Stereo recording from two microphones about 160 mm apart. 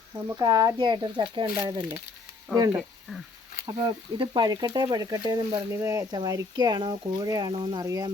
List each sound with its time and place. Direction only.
0.2 s speech: 20° right (ahead or behind)
1.5 s speech: 15° right (ahead or behind)
3.8 s speech: 30° right (ahead or behind)